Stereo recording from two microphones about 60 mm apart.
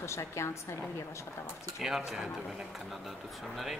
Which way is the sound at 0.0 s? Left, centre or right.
Left.